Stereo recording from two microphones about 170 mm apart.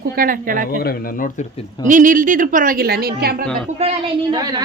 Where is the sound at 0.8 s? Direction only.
60° left (ahead or behind).